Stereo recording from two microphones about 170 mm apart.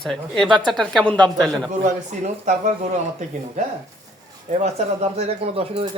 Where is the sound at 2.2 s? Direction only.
45° right (ahead or behind).